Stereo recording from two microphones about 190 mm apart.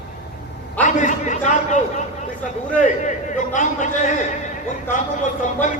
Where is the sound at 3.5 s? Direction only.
40° left (ahead or behind).